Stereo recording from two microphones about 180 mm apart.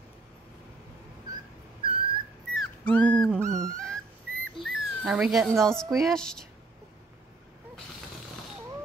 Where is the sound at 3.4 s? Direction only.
15° right (ahead or behind).